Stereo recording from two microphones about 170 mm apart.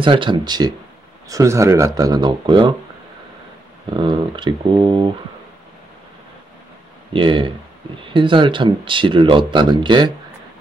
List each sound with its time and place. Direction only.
0.0 s speech: 30° right (ahead or behind)
3.9 s speech: 30° right (ahead or behind)
7.1 s speech: 30° right (ahead or behind)